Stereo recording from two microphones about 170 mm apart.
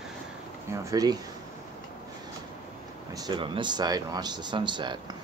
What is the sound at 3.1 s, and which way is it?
Speech, 25° right (ahead or behind).